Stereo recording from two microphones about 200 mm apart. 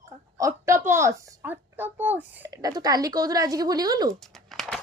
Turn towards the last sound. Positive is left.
turn(degrees=0)  # may be behind; listen again after turning